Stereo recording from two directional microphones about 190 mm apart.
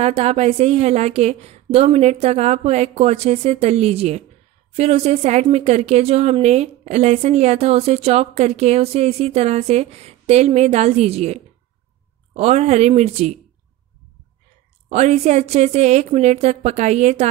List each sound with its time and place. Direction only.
0.0 s speech: 35° right (ahead or behind)
14.9 s speech: 35° right (ahead or behind)